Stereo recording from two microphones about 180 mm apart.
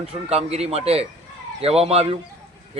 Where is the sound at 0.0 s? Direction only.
35° right (ahead or behind).